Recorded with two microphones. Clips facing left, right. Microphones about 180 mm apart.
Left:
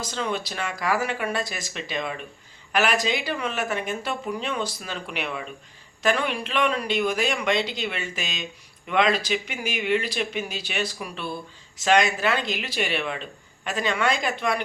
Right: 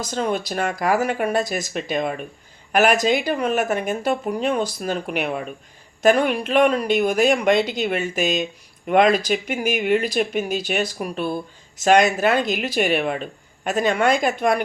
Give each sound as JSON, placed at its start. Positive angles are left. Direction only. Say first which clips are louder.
{"t": 0.0, "sound": "speech", "louder": "right 5 dB", "side_deg": -45}